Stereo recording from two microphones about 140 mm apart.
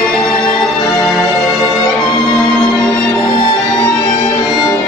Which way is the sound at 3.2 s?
30° left (ahead or behind).